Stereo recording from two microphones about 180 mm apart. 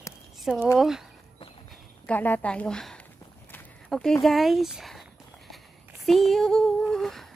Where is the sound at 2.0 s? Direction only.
10° left (ahead or behind).